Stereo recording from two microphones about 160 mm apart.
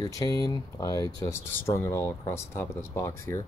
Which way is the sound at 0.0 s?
25° left (ahead or behind).